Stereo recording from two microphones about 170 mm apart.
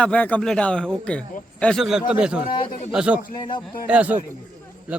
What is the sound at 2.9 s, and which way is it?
A man's voice, 5° right (ahead or behind).